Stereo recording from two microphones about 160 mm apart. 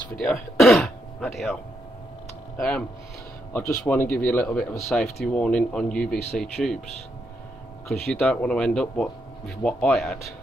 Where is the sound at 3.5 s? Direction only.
10° left (ahead or behind).